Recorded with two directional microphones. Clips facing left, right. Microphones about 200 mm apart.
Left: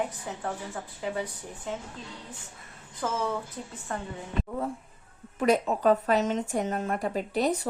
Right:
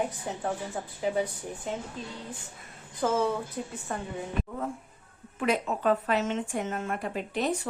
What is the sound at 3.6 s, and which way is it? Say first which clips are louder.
Speech: right 4 dB; 15° right (ahead or behind).